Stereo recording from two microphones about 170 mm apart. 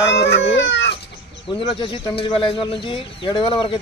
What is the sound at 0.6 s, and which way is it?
Chicken, 90° left.